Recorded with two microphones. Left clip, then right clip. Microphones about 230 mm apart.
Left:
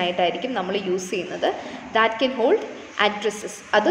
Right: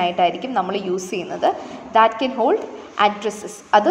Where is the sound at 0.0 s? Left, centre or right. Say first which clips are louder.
Right 3 dB; right.